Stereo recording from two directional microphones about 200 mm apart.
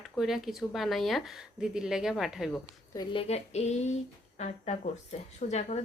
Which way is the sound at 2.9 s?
20° left (ahead or behind).